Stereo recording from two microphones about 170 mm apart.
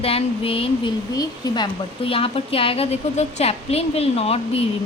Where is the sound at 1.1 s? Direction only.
25° left (ahead or behind).